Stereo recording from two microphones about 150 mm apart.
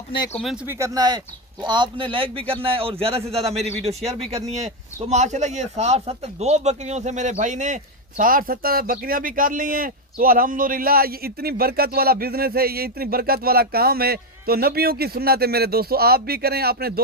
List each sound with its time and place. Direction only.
0.7 s speech: 20° right (ahead or behind); by 17.0 s 90° right